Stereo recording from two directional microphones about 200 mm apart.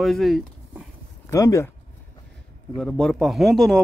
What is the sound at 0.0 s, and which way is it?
Speech, centre (ahead or behind).